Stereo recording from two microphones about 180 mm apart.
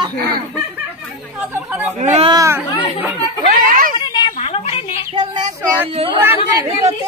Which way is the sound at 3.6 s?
50° right (ahead or behind).